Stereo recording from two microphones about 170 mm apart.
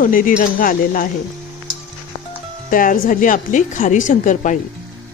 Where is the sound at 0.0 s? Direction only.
55° left (ahead or behind).